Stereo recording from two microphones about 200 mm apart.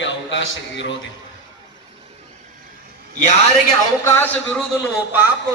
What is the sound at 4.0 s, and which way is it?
Speech, 10° left (ahead or behind).